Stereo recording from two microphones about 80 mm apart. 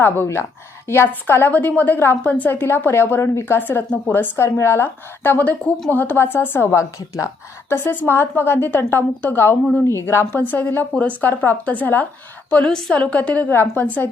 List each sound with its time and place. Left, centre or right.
0.0 s a woman's voice: left